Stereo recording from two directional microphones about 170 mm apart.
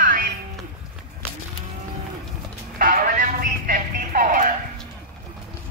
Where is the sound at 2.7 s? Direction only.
55° right (ahead or behind).